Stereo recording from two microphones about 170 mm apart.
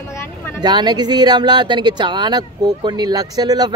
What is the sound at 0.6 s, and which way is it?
Speech, 25° right (ahead or behind).